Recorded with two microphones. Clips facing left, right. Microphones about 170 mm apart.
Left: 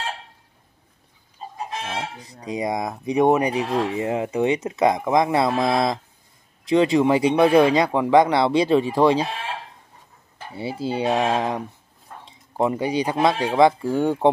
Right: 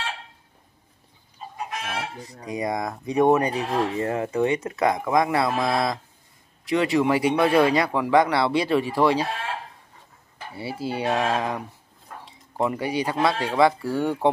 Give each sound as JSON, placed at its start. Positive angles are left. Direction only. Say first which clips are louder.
{"t": 1.7, "sound": "speech", "louder": "left 2 dB", "side_deg": 25}
{"t": 10.5, "sound": "speech", "louder": "left 3 dB", "side_deg": 20}
{"t": 12.6, "sound": "speech", "louder": "left 3 dB", "side_deg": 20}